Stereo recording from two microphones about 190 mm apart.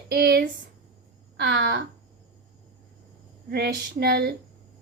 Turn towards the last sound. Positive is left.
turn(degrees=-60)  # may be behind; listen again after turning